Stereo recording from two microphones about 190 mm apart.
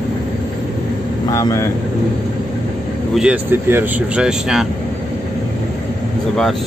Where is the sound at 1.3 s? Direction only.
15° left (ahead or behind).